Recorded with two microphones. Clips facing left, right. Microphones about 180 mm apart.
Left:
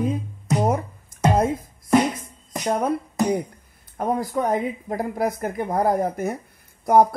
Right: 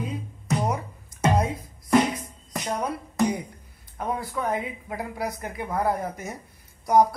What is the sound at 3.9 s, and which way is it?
Speech, 45° left (ahead or behind).